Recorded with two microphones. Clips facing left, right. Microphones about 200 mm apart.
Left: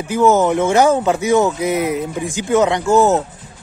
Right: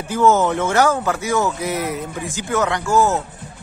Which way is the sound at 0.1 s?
15° left (ahead or behind).